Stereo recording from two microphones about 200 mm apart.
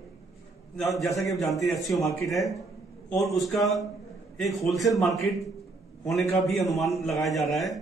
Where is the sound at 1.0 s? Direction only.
15° left (ahead or behind).